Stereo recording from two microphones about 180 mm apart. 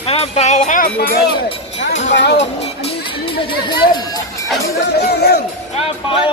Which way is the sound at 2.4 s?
35° left (ahead or behind).